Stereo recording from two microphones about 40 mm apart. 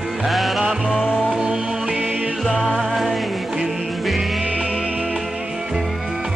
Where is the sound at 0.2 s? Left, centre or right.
Centre.